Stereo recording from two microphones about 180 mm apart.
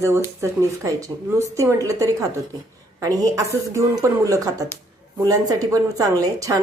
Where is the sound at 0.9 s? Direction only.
15° right (ahead or behind).